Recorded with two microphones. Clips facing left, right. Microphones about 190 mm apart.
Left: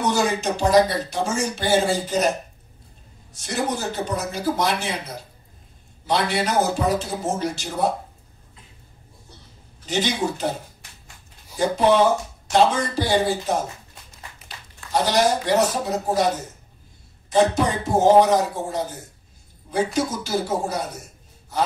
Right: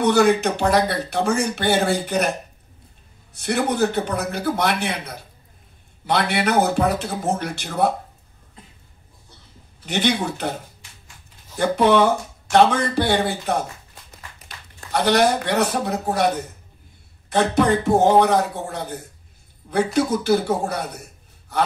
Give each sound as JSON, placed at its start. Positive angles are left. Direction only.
{"t": 0.0, "sound": "speech", "side_deg": -60}
{"t": 3.3, "sound": "speech", "side_deg": -60}
{"t": 9.8, "sound": "speech", "side_deg": -60}
{"t": 11.5, "sound": "speech", "side_deg": -60}
{"t": 14.9, "sound": "speech", "side_deg": -60}
{"t": 17.3, "sound": "speech", "side_deg": -60}